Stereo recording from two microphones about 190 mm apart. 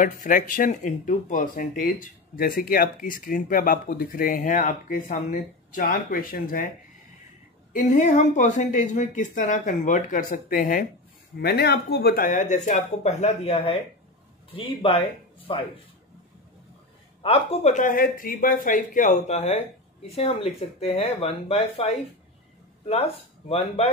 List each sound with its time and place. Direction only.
0.0 s speech: 45° left (ahead or behind)
7.7 s speech: 40° left (ahead or behind)
17.2 s speech: 30° left (ahead or behind)